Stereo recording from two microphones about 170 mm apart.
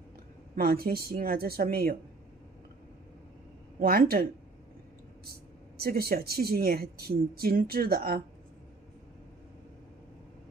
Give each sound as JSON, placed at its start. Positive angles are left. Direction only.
{"t": 0.6, "sound": "speech", "side_deg": -60}
{"t": 3.8, "sound": "speech", "side_deg": -65}